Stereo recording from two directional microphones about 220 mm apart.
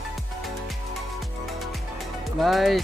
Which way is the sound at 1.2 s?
Centre (ahead or behind).